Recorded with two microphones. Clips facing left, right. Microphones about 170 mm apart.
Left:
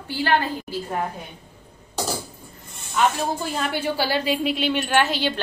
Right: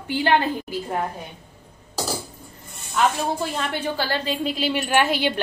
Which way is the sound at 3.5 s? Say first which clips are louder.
Left 1 dB; 5° left (ahead or behind).